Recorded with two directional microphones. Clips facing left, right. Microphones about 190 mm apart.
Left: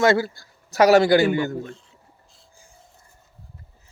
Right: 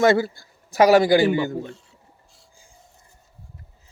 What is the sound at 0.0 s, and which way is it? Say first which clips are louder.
Speech: right 1 dB; 20° right (ahead or behind).